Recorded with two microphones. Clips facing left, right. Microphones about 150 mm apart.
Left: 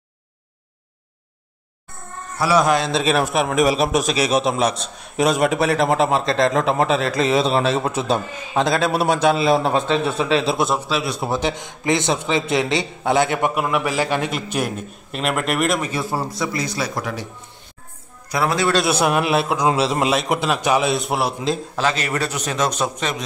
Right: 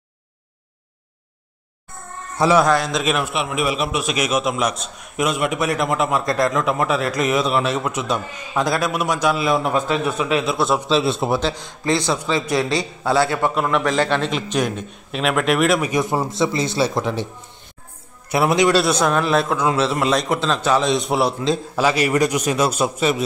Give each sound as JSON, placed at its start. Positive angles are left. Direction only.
{"t": 2.5, "sound": "a man's voice", "side_deg": 15}
{"t": 2.8, "sound": "a man's voice", "side_deg": 30}
{"t": 10.9, "sound": "speech", "side_deg": -25}
{"t": 11.3, "sound": "a man's voice", "side_deg": 20}
{"t": 15.8, "sound": "speech", "side_deg": -15}
{"t": 18.3, "sound": "speech", "side_deg": -20}
{"t": 18.9, "sound": "a man's voice", "side_deg": 10}
{"t": 21.7, "sound": "a man's voice", "side_deg": -10}